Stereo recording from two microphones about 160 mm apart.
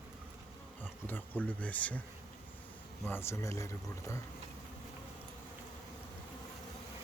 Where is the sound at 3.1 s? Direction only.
15° left (ahead or behind).